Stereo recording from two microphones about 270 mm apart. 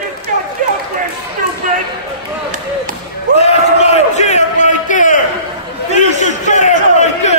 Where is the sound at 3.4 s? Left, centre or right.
Left.